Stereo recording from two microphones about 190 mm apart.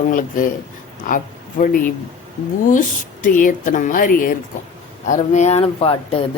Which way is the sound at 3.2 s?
45° left (ahead or behind).